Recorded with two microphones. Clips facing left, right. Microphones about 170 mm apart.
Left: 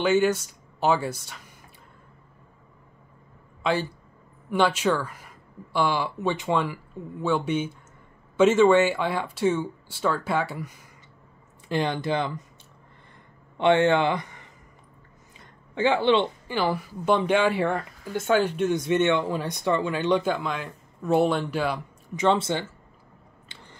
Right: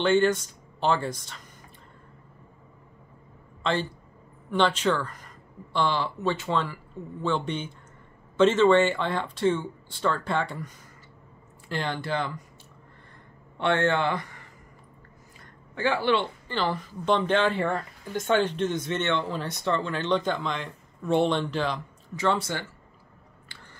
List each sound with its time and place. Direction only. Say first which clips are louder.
0.0 s speech: even; 5° left (ahead or behind)
4.5 s speech: left 1 dB; 10° left (ahead or behind)
11.7 s speech: left 4 dB; 15° left (ahead or behind)
13.6 s speech: left 4 dB; 15° left (ahead or behind)
15.7 s speech: left 4 dB; 20° left (ahead or behind)
22.1 s speech: left 4 dB; 20° left (ahead or behind)